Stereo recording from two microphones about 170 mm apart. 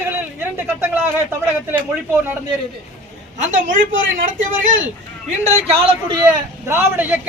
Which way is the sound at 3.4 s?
50° right (ahead or behind).